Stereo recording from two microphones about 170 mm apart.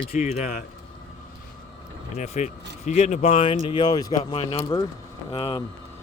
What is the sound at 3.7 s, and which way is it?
Speech, 25° left (ahead or behind).